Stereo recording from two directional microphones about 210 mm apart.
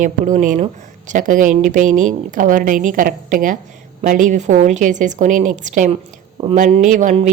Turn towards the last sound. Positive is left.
turn(degrees=-35)  # may be behind; listen again after turning